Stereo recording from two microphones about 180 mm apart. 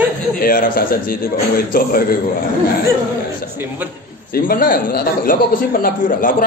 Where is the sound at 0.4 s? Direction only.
55° left (ahead or behind).